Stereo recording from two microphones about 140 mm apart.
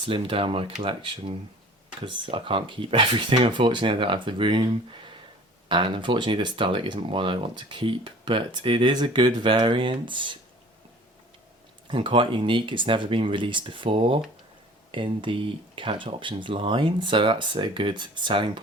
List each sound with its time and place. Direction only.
0.0 s speech: 40° right (ahead or behind)
11.9 s speech: 35° right (ahead or behind)